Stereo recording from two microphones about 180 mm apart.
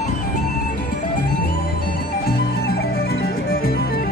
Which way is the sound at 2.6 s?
60° left (ahead or behind).